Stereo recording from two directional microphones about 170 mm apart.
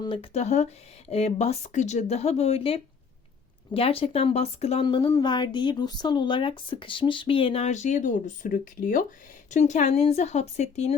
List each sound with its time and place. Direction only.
0.0 s speech: 30° left (ahead or behind)